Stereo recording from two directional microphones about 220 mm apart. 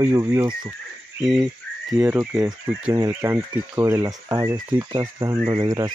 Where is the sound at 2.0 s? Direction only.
5° right (ahead or behind).